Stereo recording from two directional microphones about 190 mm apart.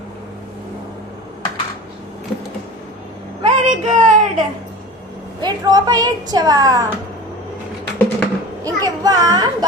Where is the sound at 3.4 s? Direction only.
35° right (ahead or behind).